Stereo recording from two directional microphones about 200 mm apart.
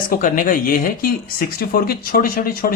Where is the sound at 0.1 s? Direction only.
40° left (ahead or behind).